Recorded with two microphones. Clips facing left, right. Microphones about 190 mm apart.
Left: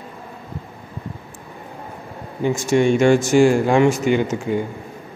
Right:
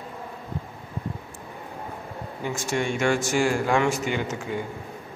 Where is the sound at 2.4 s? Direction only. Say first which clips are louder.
Left 10 dB; 20° left (ahead or behind).